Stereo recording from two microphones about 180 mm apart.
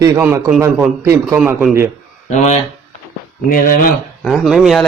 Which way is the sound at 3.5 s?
50° left (ahead or behind).